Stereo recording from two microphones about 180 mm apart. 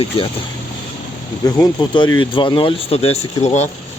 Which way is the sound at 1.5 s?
20° left (ahead or behind).